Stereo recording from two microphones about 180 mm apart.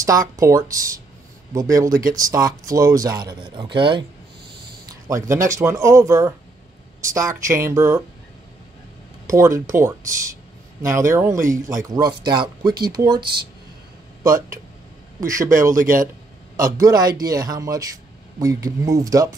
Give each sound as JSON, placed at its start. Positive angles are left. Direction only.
{"t": 0.0, "sound": "speech", "side_deg": -20}
{"t": 5.0, "sound": "speech", "side_deg": -15}
{"t": 9.3, "sound": "speech", "side_deg": -15}
{"t": 15.1, "sound": "speech", "side_deg": -20}
{"t": 15.7, "sound": "a man's voice", "side_deg": -50}
{"t": 16.5, "sound": "speech", "side_deg": -20}